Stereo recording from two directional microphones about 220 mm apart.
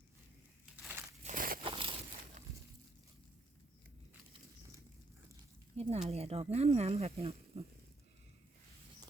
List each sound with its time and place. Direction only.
0.6 s crumpling: 5° right (ahead or behind)
1.2 s a sound: 35° right (ahead or behind)
1.6 s crumpling: 25° right (ahead or behind)
5.7 s speech: 30° right (ahead or behind)